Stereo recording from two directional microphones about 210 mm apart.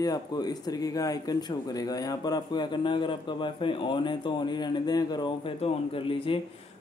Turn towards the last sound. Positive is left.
turn(degrees=25)  # may be behind; listen again after turning